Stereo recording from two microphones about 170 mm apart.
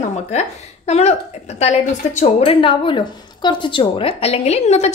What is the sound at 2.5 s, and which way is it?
A woman's voice, 30° left (ahead or behind).